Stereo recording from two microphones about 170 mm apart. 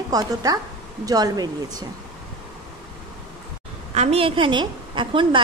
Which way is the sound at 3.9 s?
40° right (ahead or behind).